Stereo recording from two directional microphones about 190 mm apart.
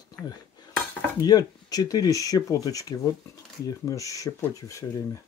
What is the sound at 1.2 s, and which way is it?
Speech, 20° left (ahead or behind).